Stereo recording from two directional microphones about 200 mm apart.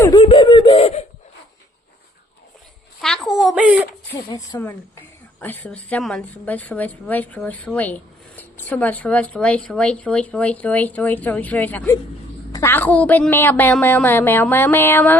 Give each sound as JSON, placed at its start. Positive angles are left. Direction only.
{"t": 0.0, "sound": "beatboxing", "side_deg": 20}
{"t": 3.0, "sound": "a sound", "side_deg": 5}
{"t": 4.3, "sound": "a woman's voice", "side_deg": 15}